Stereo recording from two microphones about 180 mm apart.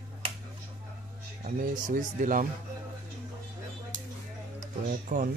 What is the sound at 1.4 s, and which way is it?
Speech, 50° right (ahead or behind).